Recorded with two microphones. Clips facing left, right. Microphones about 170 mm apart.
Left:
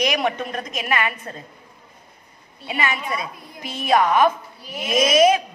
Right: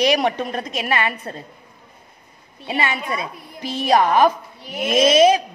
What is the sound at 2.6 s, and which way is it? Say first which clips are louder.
A woman's voice: right 2 dB; 30° right (ahead or behind).